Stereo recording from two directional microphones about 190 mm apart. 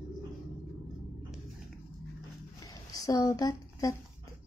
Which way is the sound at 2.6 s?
20° left (ahead or behind).